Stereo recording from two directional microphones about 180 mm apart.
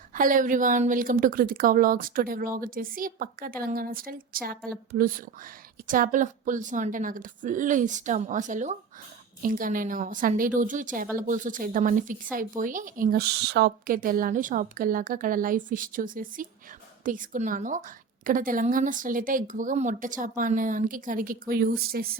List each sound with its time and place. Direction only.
0.1 s speech: 50° right (ahead or behind)
5.9 s speech: 45° right (ahead or behind)